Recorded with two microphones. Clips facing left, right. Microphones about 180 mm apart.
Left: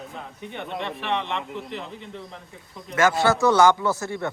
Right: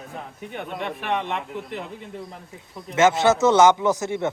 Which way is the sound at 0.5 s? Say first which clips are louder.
Right 1 dB; 15° right (ahead or behind).